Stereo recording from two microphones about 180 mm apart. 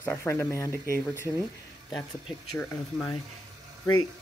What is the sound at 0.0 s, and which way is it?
Speech, 15° left (ahead or behind).